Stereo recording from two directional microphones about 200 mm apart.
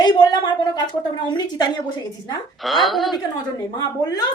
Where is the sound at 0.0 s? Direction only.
20° left (ahead or behind).